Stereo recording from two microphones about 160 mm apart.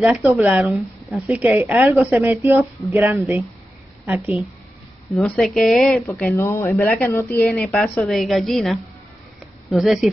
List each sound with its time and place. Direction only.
0.1 s a woman's voice: 5° right (ahead or behind)
1.3 s a woman's voice: 10° right (ahead or behind)
5.1 s a woman's voice: 5° left (ahead or behind)
6.3 s a woman's voice: 15° left (ahead or behind); by 10.1 s centre (ahead or behind)